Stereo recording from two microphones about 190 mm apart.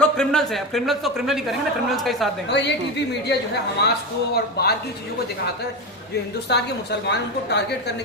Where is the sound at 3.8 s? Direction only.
60° left (ahead or behind).